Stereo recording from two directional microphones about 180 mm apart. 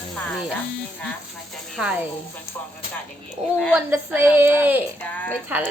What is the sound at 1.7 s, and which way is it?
Speech, 5° right (ahead or behind).